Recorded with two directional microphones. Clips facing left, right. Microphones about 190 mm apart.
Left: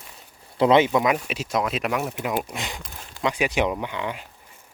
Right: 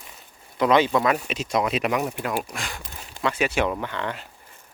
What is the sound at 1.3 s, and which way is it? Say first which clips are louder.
Speech: right 1 dB; 5° left (ahead or behind).